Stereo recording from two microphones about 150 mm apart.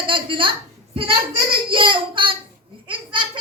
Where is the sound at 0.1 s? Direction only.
35° right (ahead or behind).